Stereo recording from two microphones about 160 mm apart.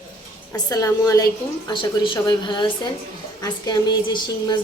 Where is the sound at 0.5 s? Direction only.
20° left (ahead or behind).